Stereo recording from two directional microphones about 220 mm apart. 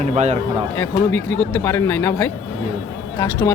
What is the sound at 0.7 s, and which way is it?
Speech, 10° left (ahead or behind).